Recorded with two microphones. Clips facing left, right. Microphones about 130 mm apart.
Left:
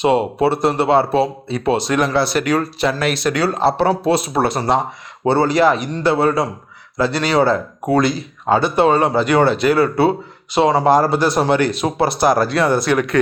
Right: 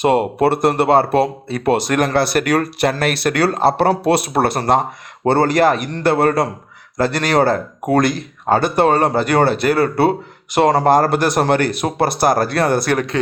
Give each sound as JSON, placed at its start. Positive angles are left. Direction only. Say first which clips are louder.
{"t": 0.0, "sound": "speech", "louder": "right 1 dB", "side_deg": -50}
{"t": 6.9, "sound": "speech", "louder": "even", "side_deg": -45}